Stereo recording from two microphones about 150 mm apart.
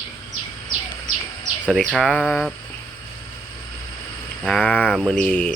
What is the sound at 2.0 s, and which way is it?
Speech, 5° left (ahead or behind).